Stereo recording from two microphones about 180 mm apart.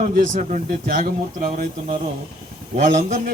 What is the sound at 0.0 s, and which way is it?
A man's voice, 50° right (ahead or behind).